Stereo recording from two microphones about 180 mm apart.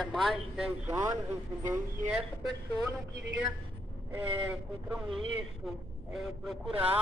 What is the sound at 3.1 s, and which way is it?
Speech, 70° right (ahead or behind).